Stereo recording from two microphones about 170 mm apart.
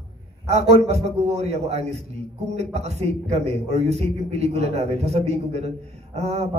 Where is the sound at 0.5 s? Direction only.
40° right (ahead or behind).